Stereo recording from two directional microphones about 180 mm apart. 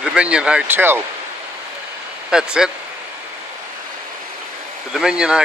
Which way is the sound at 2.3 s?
5° right (ahead or behind).